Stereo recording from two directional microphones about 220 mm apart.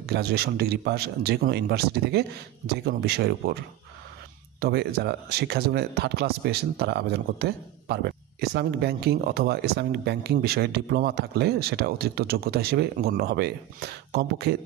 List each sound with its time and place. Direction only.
0.0 s speech: 45° right (ahead or behind)
4.6 s speech: 45° right (ahead or behind)